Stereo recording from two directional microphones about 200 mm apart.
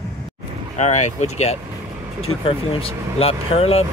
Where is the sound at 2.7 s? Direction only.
30° left (ahead or behind).